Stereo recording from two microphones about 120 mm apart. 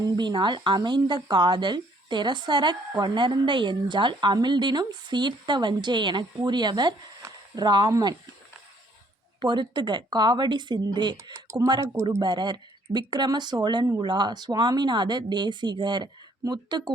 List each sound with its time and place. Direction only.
0.0 s speech: 40° right (ahead or behind)
9.4 s speech: 40° right (ahead or behind)
11.4 s speech: 20° right (ahead or behind)
12.2 s speech: 40° right (ahead or behind)